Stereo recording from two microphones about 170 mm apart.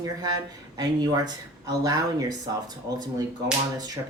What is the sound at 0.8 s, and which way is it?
Speech, 25° right (ahead or behind).